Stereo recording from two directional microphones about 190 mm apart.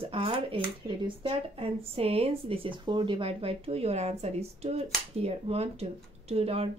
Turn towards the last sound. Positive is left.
turn(degrees=-30)  # may be behind; listen again after turning